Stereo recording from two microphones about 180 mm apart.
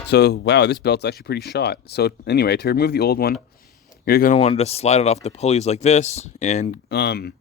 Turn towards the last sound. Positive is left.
turn(degrees=65)  # may be behind; listen again after turning